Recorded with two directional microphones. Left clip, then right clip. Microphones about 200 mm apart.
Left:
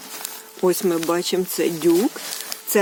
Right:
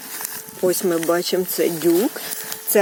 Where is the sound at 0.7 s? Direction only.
5° left (ahead or behind).